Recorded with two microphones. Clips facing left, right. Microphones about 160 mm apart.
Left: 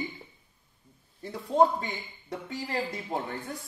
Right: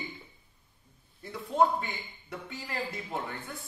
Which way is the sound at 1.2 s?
35° left (ahead or behind).